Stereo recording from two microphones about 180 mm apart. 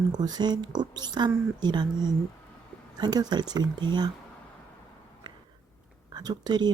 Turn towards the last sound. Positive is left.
turn(degrees=-25)  # may be behind; listen again after turning